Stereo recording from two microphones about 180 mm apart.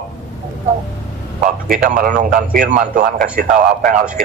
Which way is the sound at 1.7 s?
50° right (ahead or behind).